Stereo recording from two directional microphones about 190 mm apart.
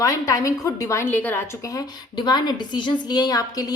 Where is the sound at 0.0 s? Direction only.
15° left (ahead or behind).